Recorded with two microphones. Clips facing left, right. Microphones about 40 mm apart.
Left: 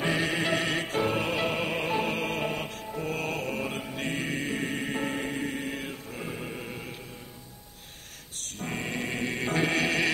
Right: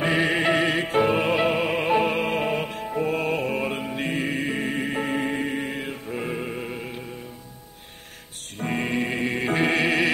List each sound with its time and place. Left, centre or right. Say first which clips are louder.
0.0 s music: right 6 dB; right
5.3 s mantra: right 5 dB; right
6.1 s music: right 9 dB; right
8.5 s music: right 7 dB; right